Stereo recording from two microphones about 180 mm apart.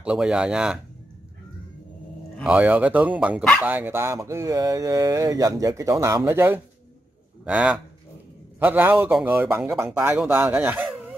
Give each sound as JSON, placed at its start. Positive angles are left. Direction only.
{"t": 0.0, "sound": "speech", "side_deg": -5}
{"t": 2.3, "sound": "speech", "side_deg": -5}